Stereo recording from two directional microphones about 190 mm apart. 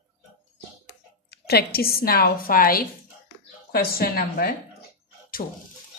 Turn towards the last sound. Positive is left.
turn(degrees=40)  # may be behind; listen again after turning